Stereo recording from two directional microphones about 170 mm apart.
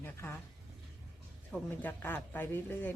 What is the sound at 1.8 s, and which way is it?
Speech, 10° left (ahead or behind).